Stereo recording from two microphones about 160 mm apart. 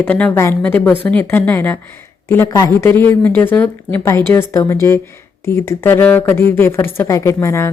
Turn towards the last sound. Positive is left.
turn(degrees=15)  # may be behind; listen again after turning